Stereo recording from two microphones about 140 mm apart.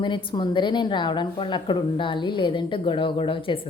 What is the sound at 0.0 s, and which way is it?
A woman's voice, 35° left (ahead or behind).